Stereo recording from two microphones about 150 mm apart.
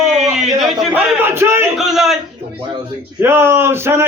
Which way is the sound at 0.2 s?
Centre (ahead or behind).